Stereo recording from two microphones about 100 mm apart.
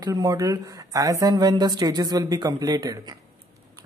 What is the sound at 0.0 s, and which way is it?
Speech, 40° right (ahead or behind).